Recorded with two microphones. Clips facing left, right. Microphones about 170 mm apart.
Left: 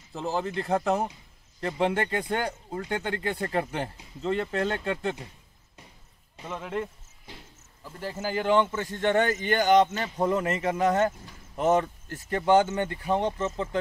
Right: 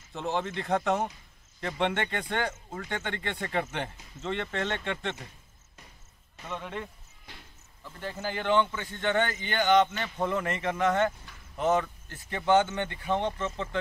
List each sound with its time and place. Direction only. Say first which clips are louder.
0.1 s speech: left 2 dB; centre (ahead or behind)
2.2 s speech: left 2 dB; 10° left (ahead or behind)
6.5 s speech: left 4 dB; 5° left (ahead or behind)
8.0 s speech: left 4 dB; 40° left (ahead or behind)
13.1 s speech: left 2 dB; 5° left (ahead or behind)